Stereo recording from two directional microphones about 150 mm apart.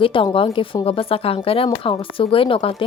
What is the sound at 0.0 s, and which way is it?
A woman's voice, 35° left (ahead or behind).